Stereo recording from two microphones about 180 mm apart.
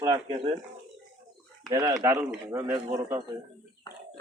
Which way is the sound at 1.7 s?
20° right (ahead or behind).